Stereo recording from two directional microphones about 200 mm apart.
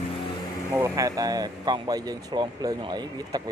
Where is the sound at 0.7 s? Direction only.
15° right (ahead or behind).